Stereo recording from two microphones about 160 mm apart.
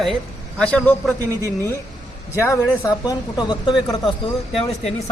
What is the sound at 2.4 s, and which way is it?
Speech, 15° left (ahead or behind).